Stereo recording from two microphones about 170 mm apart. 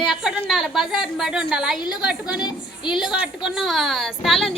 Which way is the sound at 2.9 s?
5° right (ahead or behind).